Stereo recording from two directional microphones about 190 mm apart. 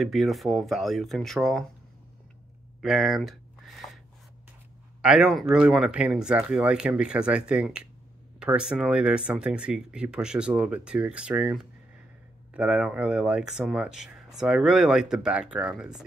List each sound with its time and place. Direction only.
0.0 s speech: centre (ahead or behind)
2.8 s a sound: centre (ahead or behind)
5.0 s speech: 5° right (ahead or behind)